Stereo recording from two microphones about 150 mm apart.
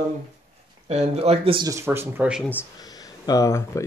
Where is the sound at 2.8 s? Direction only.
25° left (ahead or behind).